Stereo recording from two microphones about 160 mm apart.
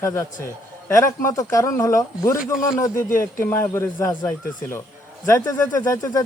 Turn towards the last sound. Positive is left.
turn(degrees=20)  # may be behind; listen again after turning